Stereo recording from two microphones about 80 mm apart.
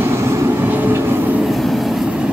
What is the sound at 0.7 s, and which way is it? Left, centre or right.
Train, right.